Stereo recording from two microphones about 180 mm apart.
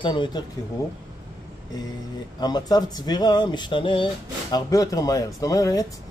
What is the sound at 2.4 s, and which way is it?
Speech, 20° left (ahead or behind).